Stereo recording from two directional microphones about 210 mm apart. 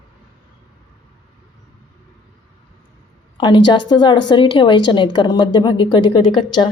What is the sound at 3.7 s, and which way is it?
A woman's voice, 20° left (ahead or behind).